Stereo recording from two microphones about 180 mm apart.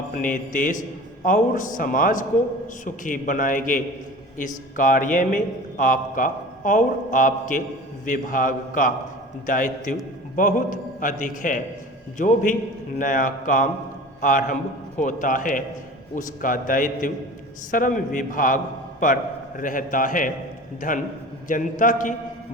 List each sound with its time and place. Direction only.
0.1 s a man's voice: 45° left (ahead or behind)
21.4 s a man's voice: 45° left (ahead or behind)